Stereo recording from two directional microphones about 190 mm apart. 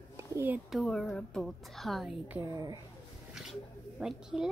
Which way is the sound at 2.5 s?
20° right (ahead or behind).